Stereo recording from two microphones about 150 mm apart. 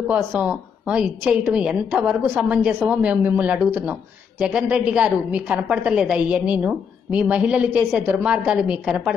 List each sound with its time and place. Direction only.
0.1 s a woman's voice: 10° right (ahead or behind)